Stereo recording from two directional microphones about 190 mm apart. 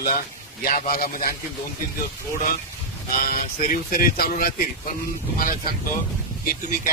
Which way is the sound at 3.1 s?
45° left (ahead or behind).